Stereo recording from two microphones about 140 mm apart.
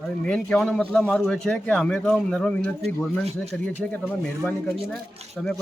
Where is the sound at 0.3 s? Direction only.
5° left (ahead or behind).